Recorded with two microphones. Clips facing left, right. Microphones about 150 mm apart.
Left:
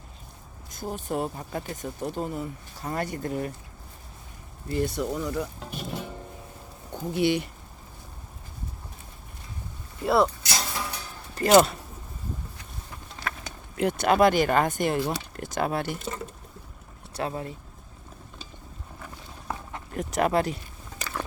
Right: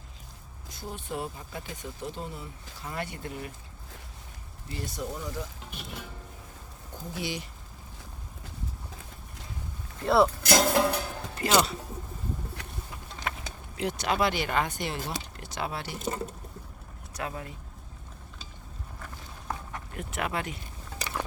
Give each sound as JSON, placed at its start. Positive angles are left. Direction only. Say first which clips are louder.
{"t": 0.7, "sound": "speech", "louder": "left 6 dB", "side_deg": 45}
{"t": 4.7, "sound": "speech", "louder": "left 9 dB", "side_deg": 60}
{"t": 5.7, "sound": "speech", "louder": "left 9 dB", "side_deg": 40}
{"t": 7.1, "sound": "speech", "louder": "left 11 dB", "side_deg": 60}
{"t": 10.0, "sound": "speech", "louder": "even", "side_deg": 0}
{"t": 10.4, "sound": "a sound", "louder": "right 9 dB", "side_deg": -50}
{"t": 11.3, "sound": "speech", "louder": "left 7 dB", "side_deg": 45}
{"t": 13.3, "sound": "a sound", "louder": "even", "side_deg": -20}
{"t": 13.7, "sound": "speech", "louder": "left 7 dB", "side_deg": 55}
{"t": 17.2, "sound": "speech", "louder": "left 5 dB", "side_deg": 30}
{"t": 18.9, "sound": "boat", "louder": "left 2 dB", "side_deg": 10}
{"t": 19.9, "sound": "speech", "louder": "left 9 dB", "side_deg": 40}
{"t": 21.0, "sound": "a sound", "louder": "left 1 dB", "side_deg": -15}